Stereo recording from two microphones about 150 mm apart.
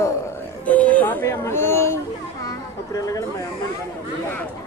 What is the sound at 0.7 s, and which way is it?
Speech, 10° left (ahead or behind).